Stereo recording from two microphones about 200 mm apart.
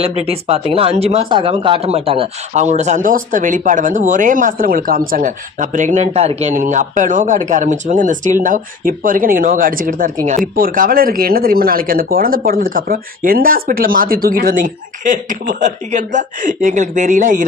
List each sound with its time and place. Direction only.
0.0 s speech: 30° right (ahead or behind)